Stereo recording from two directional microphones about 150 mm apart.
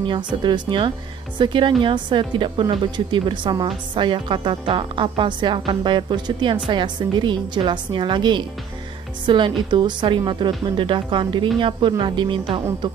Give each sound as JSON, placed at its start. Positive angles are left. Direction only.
{"t": 0.4, "sound": "a woman's voice", "side_deg": -30}